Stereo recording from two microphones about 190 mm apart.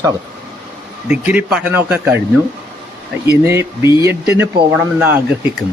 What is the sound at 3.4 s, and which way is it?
A man's voice, 15° right (ahead or behind).